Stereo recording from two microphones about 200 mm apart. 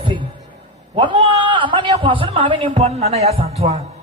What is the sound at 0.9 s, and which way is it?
A man's voice, 25° right (ahead or behind).